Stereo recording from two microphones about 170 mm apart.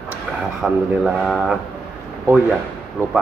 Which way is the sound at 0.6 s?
Centre (ahead or behind).